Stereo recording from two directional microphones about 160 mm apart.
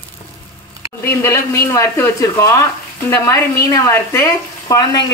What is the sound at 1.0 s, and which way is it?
Speech, 15° left (ahead or behind).